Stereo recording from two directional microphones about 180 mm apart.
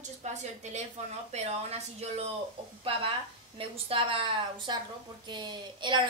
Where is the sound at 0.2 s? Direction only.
40° right (ahead or behind).